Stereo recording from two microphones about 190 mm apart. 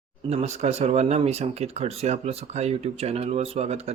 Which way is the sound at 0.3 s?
35° right (ahead or behind).